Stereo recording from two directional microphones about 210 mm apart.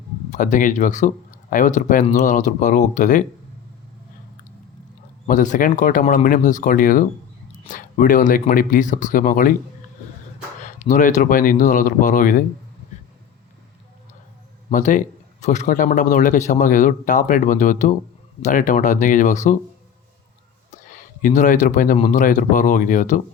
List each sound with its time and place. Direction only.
0.3 s a man's voice: 35° left (ahead or behind)
5.2 s a man's voice: 35° left (ahead or behind)
10.6 s a man's voice: 35° left (ahead or behind)
14.7 s a man's voice: 35° left (ahead or behind)
20.7 s a sound: 40° left (ahead or behind)
21.9 s a man's voice: 35° left (ahead or behind)